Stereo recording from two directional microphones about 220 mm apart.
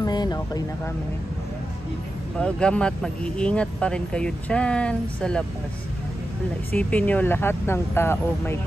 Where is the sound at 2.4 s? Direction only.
5° left (ahead or behind).